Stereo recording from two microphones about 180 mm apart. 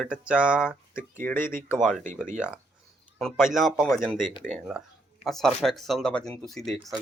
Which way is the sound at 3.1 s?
Centre (ahead or behind).